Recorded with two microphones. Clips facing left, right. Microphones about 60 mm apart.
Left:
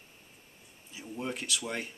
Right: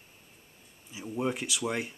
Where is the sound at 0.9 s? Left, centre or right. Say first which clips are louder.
Right 5 dB; centre.